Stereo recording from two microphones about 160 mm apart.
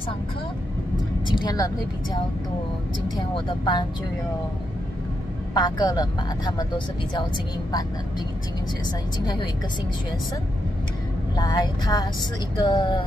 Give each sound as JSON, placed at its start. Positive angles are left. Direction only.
{"t": 1.2, "sound": "speech", "side_deg": 25}
{"t": 3.2, "sound": "speech", "side_deg": 30}
{"t": 5.5, "sound": "speech", "side_deg": 25}
{"t": 9.2, "sound": "speech", "side_deg": 25}
{"t": 11.3, "sound": "speech", "side_deg": 25}